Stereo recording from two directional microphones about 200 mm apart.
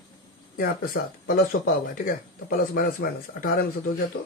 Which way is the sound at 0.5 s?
45° left (ahead or behind).